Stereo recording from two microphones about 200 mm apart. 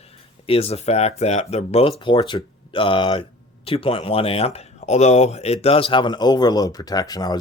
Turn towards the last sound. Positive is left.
turn(degrees=20)  # may be behind; listen again after turning